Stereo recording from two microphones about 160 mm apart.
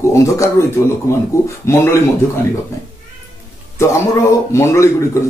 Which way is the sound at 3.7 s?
20° left (ahead or behind).